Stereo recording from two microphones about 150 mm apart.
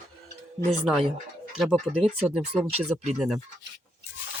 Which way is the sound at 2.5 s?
45° right (ahead or behind).